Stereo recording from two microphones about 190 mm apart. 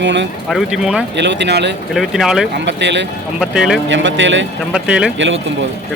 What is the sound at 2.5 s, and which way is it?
Speech, 65° right (ahead or behind).